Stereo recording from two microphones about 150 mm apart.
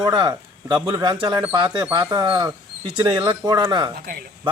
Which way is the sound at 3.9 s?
90° right.